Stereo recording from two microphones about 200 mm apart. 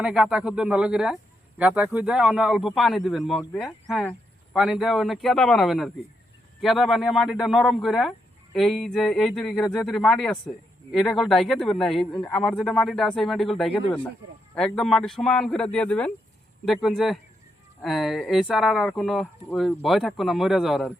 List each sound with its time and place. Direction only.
0.0 s speech: 5° right (ahead or behind)